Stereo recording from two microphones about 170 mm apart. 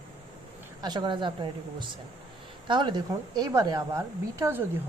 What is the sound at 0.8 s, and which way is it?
A woman's voice, 25° right (ahead or behind).